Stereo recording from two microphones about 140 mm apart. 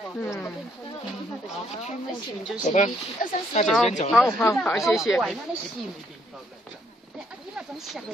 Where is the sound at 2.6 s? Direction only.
60° left (ahead or behind).